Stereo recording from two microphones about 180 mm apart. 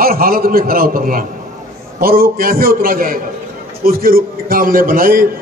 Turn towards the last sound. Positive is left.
turn(degrees=-55)  # may be behind; listen again after turning